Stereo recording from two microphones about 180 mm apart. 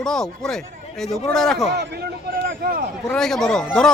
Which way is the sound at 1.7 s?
65° right (ahead or behind).